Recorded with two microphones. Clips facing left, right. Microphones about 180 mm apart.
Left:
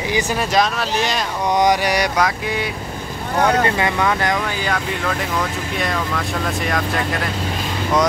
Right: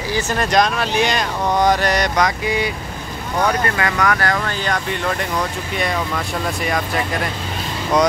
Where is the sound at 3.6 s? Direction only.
20° left (ahead or behind).